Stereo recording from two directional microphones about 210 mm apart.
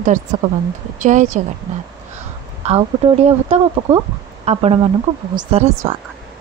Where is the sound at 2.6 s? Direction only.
30° right (ahead or behind).